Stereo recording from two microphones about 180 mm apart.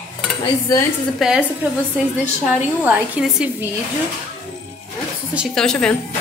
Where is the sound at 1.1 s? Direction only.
5° right (ahead or behind).